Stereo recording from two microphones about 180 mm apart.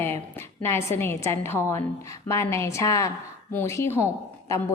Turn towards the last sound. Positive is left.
turn(degrees=15)  # may be behind; listen again after turning